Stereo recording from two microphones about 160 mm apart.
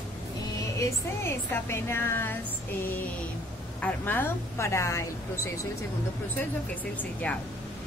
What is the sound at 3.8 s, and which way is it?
Speech, 10° left (ahead or behind).